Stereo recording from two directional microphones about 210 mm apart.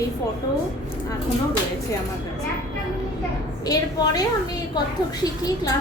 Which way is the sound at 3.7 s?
20° left (ahead or behind).